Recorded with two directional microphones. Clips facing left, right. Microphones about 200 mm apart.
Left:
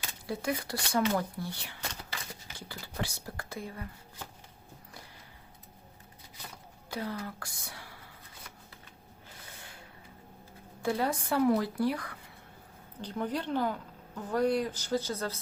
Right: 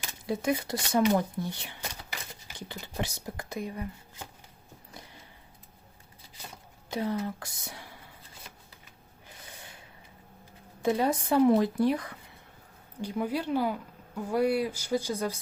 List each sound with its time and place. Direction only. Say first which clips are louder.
0.1 s speech: right 5 dB; 20° right (ahead or behind)
6.9 s speech: right 6 dB; 20° right (ahead or behind)
10.8 s speech: right 4 dB; 20° right (ahead or behind)
13.0 s speech: right 3 dB; 10° right (ahead or behind)